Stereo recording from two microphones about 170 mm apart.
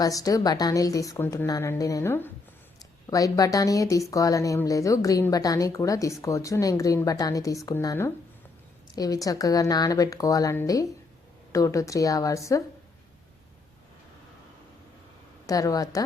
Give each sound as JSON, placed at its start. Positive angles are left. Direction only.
{"t": 0.0, "sound": "speech", "side_deg": 20}
{"t": 15.4, "sound": "speech", "side_deg": 20}